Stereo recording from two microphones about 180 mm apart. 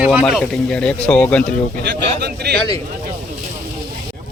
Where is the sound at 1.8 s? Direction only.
65° right (ahead or behind).